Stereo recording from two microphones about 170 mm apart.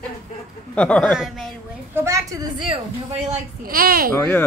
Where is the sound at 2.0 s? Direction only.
15° right (ahead or behind).